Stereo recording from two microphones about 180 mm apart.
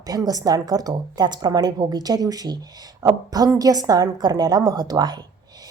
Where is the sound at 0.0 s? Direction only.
20° right (ahead or behind).